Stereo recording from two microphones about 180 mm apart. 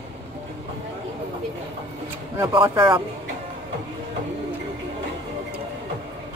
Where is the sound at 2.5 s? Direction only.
25° right (ahead or behind).